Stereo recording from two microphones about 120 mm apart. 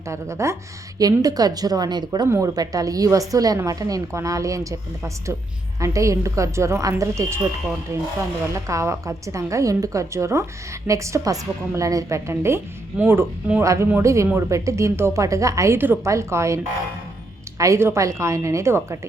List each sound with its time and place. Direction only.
0.1 s a woman's voice: 25° right (ahead or behind)
17.6 s a woman's voice: 25° right (ahead or behind)